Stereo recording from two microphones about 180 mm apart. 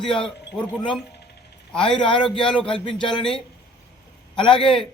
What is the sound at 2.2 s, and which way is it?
Speech, 5° left (ahead or behind).